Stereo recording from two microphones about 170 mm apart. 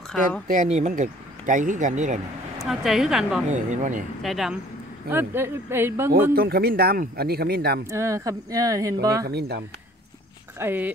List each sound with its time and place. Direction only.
0.5 s speech: 45° right (ahead or behind)
2.6 s a woman's voice: 5° right (ahead or behind)
3.4 s speech: 45° right (ahead or behind)
4.2 s a woman's voice: centre (ahead or behind)
5.1 s speech: 15° right (ahead or behind)
6.3 s speech: 60° right (ahead or behind)
7.9 s speech: 15° right (ahead or behind)
9.3 s speech: 75° right (ahead or behind)
10.6 s speech: 10° right (ahead or behind)